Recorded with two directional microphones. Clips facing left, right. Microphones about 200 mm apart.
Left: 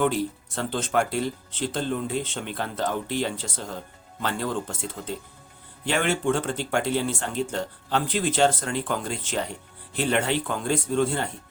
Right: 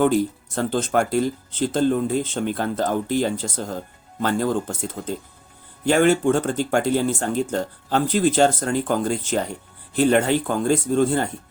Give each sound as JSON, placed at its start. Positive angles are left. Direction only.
{"t": 0.0, "sound": "speech", "side_deg": -45}